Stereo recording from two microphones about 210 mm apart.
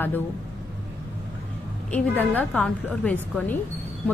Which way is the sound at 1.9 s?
10° left (ahead or behind).